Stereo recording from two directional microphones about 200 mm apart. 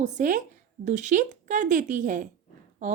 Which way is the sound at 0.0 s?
40° right (ahead or behind).